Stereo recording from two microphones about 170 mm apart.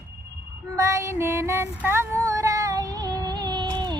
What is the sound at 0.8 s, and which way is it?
Music, 20° right (ahead or behind).